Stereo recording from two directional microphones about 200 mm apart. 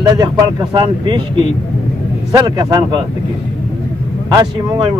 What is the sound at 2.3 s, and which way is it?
Speech, 20° right (ahead or behind).